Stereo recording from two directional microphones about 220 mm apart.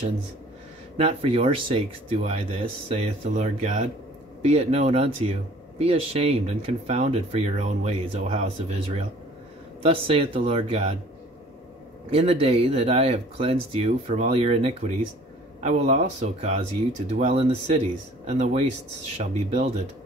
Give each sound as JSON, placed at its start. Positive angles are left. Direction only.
{"t": 0.9, "sound": "speech", "side_deg": -25}
{"t": 12.1, "sound": "speech", "side_deg": -25}